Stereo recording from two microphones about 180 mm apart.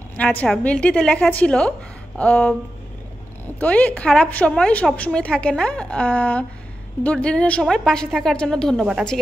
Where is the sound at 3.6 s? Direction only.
10° left (ahead or behind).